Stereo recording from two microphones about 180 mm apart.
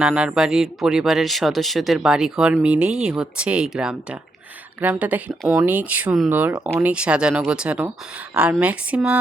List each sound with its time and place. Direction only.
0.0 s speech: 5° right (ahead or behind)